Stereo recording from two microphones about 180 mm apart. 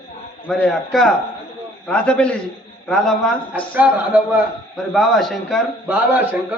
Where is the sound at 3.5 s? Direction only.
10° right (ahead or behind).